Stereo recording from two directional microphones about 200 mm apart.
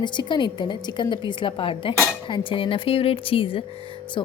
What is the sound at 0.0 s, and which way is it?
A woman's voice, 25° left (ahead or behind).